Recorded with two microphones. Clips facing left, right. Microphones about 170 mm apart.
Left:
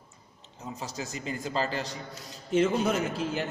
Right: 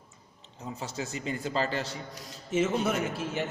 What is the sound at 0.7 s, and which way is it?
Speech, 35° left (ahead or behind).